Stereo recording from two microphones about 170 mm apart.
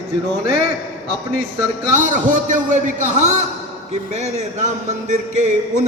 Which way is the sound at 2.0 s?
50° right (ahead or behind).